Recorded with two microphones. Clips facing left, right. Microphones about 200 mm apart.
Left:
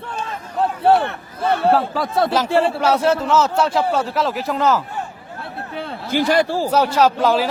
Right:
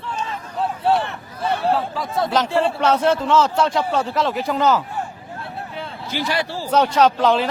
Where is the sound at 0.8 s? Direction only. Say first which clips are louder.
Left 5 dB; 60° left (ahead or behind).